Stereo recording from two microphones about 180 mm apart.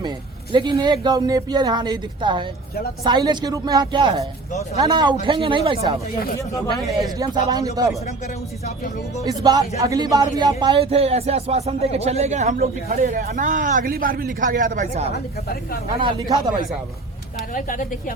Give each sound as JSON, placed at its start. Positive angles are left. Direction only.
{"t": 0.5, "sound": "speech", "side_deg": -25}
{"t": 6.5, "sound": "speech", "side_deg": 20}
{"t": 7.2, "sound": "speech", "side_deg": -25}
{"t": 8.6, "sound": "speech", "side_deg": 40}
{"t": 9.2, "sound": "speech", "side_deg": -20}
{"t": 16.0, "sound": "speech", "side_deg": -25}
{"t": 17.5, "sound": "speech", "side_deg": 50}